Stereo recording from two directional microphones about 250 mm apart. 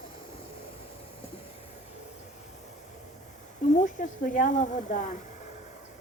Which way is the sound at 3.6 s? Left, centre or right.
Left.